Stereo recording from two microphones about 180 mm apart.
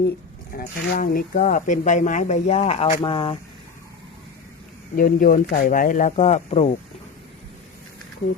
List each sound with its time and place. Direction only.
0.5 s speech: 50° left (ahead or behind); by 3.3 s 30° left (ahead or behind)
4.9 s speech: 50° left (ahead or behind)